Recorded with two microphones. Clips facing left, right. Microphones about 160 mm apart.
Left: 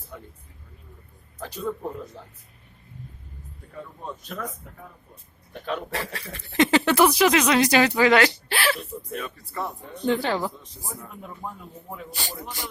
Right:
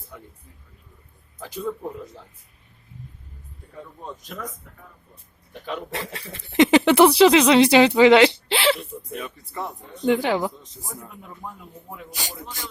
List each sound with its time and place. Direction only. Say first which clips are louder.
1.4 s a man's voice: right 2 dB; 10° right (ahead or behind)
4.0 s speech: left 1 dB; 15° right (ahead or behind)
5.6 s speech: left 1 dB; 15° right (ahead or behind)
11.4 s speech: left 1 dB; 5° left (ahead or behind)
12.1 s speech: right 2 dB; 15° right (ahead or behind)